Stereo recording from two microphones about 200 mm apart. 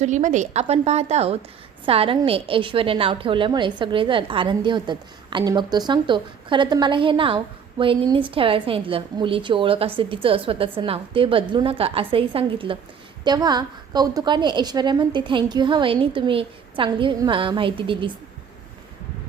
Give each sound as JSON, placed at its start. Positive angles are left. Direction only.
{"t": 0.0, "sound": "a woman's voice", "side_deg": -35}